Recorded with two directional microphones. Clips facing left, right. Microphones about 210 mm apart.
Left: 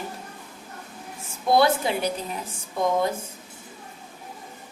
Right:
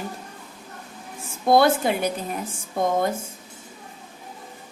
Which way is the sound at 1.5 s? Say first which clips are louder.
Right 2 dB; 50° right (ahead or behind).